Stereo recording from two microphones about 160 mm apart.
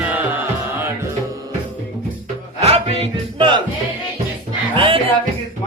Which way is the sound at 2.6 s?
40° right (ahead or behind).